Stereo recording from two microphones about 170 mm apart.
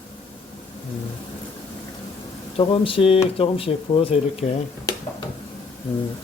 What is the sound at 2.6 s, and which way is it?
Speech, 30° left (ahead or behind).